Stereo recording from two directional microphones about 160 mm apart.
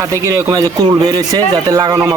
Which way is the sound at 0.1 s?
20° right (ahead or behind).